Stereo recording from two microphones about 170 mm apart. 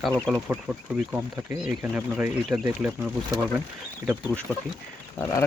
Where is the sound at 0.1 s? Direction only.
5° left (ahead or behind).